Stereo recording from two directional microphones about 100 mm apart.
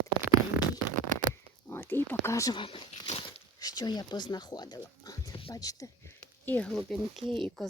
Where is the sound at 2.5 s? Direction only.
55° left (ahead or behind).